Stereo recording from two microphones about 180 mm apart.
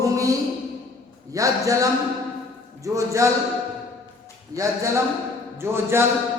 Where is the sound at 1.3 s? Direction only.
20° right (ahead or behind).